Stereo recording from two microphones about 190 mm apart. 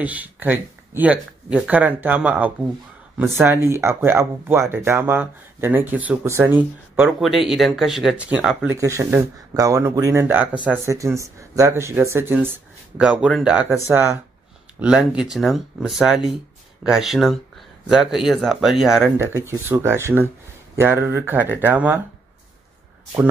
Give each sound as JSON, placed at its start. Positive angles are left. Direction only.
{"t": 0.0, "sound": "speech", "side_deg": -10}
{"t": 19.1, "sound": "speech", "side_deg": -15}